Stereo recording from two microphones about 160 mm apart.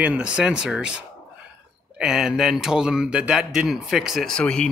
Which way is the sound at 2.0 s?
5° right (ahead or behind).